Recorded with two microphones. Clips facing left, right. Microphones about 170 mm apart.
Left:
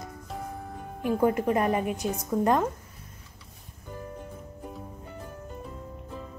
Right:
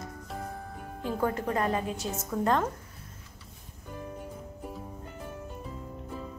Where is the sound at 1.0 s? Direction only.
15° left (ahead or behind).